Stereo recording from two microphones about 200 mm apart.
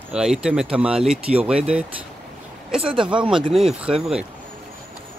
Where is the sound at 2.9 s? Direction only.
25° right (ahead or behind).